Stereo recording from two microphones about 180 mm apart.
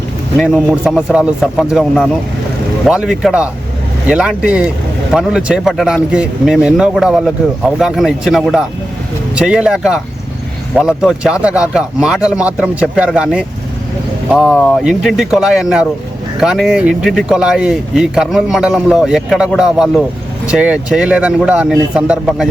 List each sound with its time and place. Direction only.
0.3 s a man's voice: centre (ahead or behind)